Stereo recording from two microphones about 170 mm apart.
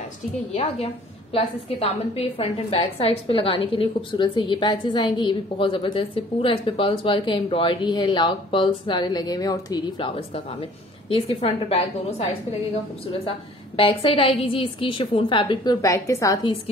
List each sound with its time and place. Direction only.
0.5 s a woman's voice: 40° left (ahead or behind)
13.7 s a woman's voice: 35° left (ahead or behind)